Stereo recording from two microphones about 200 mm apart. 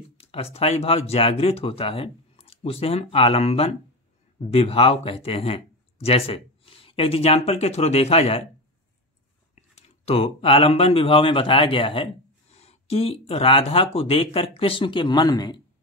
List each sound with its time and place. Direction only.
0.2 s speech: 30° left (ahead or behind)
9.6 s speech: 30° left (ahead or behind)